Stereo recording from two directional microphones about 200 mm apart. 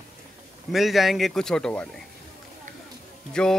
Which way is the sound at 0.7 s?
Centre (ahead or behind).